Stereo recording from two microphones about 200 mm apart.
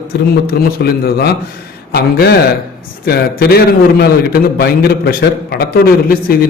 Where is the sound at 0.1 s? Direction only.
55° left (ahead or behind).